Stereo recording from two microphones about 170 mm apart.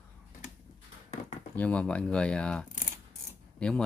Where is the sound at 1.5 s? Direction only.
10° left (ahead or behind).